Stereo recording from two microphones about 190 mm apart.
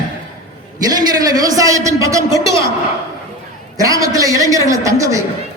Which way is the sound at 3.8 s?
20° right (ahead or behind).